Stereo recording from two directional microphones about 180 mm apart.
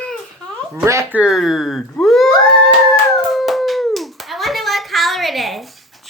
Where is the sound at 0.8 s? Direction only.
15° right (ahead or behind).